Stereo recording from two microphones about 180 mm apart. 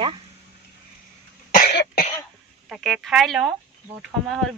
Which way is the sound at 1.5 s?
60° left (ahead or behind).